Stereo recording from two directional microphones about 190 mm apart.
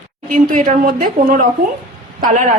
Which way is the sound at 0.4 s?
45° right (ahead or behind).